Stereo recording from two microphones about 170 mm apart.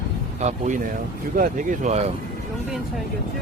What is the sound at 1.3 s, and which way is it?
Speech, 60° right (ahead or behind).